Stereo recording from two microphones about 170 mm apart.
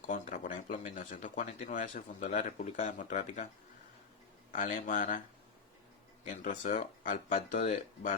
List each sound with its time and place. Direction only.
0.0 s speech: 50° left (ahead or behind)
4.5 s speech: 50° left (ahead or behind)
6.2 s speech: 45° left (ahead or behind)